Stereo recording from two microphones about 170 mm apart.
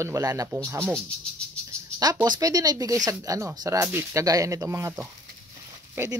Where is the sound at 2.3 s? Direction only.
20° right (ahead or behind).